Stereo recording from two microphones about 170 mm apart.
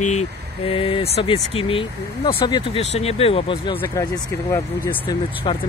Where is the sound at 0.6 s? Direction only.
30° left (ahead or behind).